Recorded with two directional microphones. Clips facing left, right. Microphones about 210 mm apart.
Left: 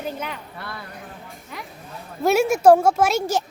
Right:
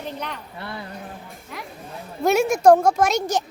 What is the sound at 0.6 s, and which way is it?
Speech, 20° right (ahead or behind).